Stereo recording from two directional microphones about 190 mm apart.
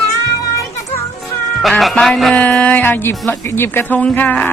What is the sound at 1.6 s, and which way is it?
Speech, centre (ahead or behind).